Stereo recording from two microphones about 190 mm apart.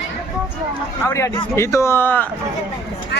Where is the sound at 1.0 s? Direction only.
15° left (ahead or behind).